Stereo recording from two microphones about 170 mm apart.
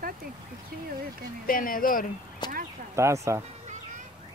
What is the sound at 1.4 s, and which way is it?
Speech, 55° left (ahead or behind).